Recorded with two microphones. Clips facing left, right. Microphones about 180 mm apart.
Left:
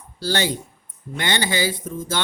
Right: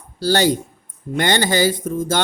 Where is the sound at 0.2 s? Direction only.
40° right (ahead or behind).